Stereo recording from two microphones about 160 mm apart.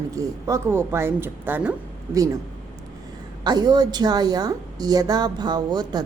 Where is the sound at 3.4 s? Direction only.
25° right (ahead or behind).